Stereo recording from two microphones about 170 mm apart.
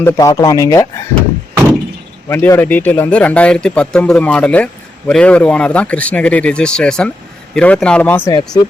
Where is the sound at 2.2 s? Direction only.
15° left (ahead or behind).